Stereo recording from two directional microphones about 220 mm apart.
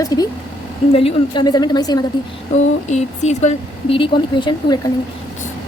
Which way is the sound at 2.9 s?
30° left (ahead or behind).